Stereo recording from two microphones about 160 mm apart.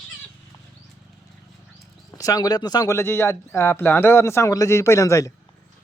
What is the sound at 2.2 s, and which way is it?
Speech, 20° left (ahead or behind).